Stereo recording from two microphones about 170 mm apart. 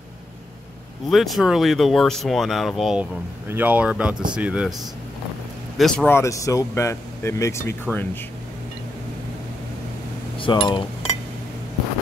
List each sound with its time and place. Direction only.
1.1 s speech: centre (ahead or behind)
5.8 s speech: 5° left (ahead or behind)
6.1 s speech: 20° left (ahead or behind)
10.3 s speech: 30° left (ahead or behind)